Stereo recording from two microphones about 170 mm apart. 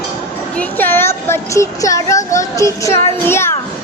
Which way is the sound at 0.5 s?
10° left (ahead or behind).